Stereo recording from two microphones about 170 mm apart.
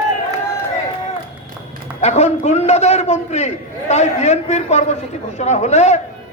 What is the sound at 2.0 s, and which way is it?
A man's voice, 40° left (ahead or behind).